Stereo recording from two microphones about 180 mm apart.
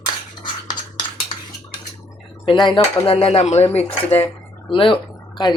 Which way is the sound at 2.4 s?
25° left (ahead or behind).